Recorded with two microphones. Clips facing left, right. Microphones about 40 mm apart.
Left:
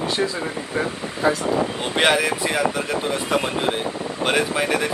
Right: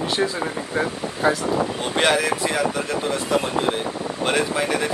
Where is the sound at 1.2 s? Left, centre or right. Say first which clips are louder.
Even; right.